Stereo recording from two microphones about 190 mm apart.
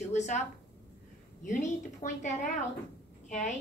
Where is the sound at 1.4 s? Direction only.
40° left (ahead or behind).